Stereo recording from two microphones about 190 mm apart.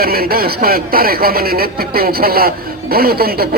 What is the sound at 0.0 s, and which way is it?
Speech, 55° right (ahead or behind).